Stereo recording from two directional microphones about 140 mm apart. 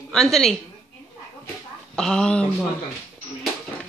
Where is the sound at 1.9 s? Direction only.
5° left (ahead or behind).